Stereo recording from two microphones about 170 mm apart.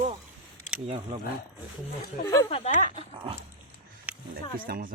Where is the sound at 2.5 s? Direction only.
40° left (ahead or behind).